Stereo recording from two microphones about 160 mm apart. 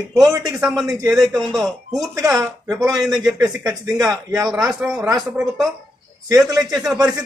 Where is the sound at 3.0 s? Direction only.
Centre (ahead or behind).